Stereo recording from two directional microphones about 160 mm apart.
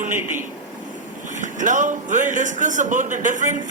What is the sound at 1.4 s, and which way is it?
Speech, 50° right (ahead or behind).